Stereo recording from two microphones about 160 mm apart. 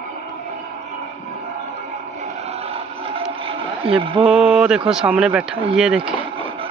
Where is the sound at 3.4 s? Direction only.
35° right (ahead or behind).